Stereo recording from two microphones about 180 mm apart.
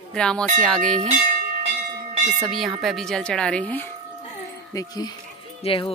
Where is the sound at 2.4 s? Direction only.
Centre (ahead or behind).